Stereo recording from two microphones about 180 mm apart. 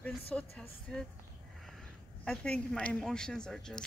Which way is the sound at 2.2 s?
5° left (ahead or behind).